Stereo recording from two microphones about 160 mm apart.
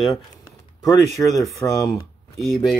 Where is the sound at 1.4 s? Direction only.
20° left (ahead or behind).